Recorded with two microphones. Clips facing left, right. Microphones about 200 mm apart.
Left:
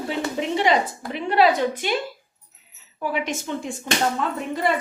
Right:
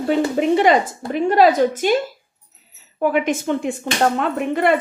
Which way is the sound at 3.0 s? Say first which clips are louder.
Right 8 dB; 55° right (ahead or behind).